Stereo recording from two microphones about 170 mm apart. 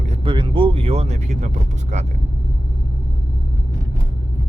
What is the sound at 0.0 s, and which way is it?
Vehicle, 35° right (ahead or behind).